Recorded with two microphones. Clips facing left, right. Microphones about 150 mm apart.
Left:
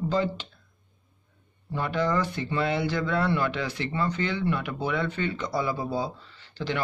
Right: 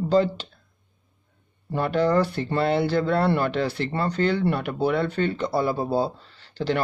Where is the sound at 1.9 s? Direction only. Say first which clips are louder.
Right 5 dB; 35° right (ahead or behind).